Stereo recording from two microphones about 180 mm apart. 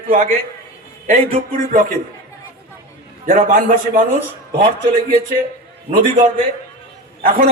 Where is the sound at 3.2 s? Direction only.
50° right (ahead or behind).